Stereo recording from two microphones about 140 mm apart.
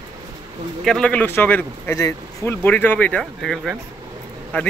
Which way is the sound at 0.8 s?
5° left (ahead or behind).